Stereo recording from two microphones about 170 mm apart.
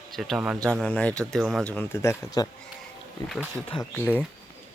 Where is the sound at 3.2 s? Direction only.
Centre (ahead or behind).